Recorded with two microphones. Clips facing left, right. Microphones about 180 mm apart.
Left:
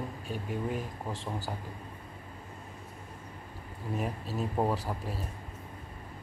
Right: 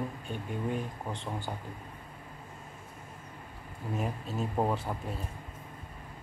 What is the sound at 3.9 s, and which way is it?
Speech, centre (ahead or behind).